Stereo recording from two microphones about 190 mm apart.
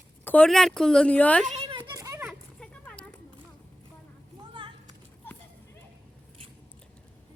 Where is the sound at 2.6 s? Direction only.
5° left (ahead or behind).